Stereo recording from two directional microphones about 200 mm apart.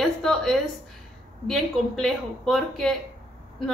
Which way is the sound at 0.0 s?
Centre (ahead or behind).